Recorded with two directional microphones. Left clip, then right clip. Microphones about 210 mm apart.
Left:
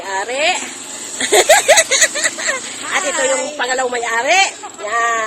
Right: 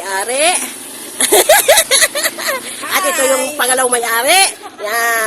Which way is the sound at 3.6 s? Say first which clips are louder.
Right 3 dB; 35° right (ahead or behind).